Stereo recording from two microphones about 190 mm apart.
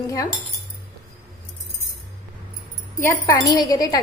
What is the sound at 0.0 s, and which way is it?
Speech, 15° left (ahead or behind).